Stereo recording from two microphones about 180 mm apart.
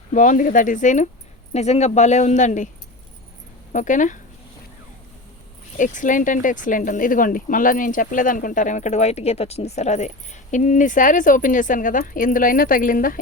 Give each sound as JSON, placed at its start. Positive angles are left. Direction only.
{"t": 0.1, "sound": "speech", "side_deg": 45}
{"t": 3.7, "sound": "speech", "side_deg": 45}
{"t": 5.7, "sound": "speech", "side_deg": 45}